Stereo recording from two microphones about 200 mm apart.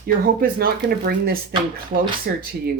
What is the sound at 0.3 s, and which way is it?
Speech, 50° right (ahead or behind).